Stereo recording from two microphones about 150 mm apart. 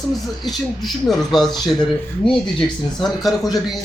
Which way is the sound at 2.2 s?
35° left (ahead or behind).